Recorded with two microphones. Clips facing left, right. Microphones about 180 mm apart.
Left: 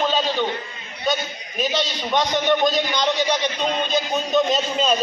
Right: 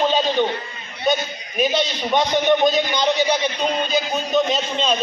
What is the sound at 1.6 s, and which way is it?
A man's voice, 10° right (ahead or behind).